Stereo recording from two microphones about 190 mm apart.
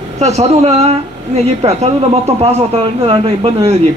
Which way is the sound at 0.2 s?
35° right (ahead or behind).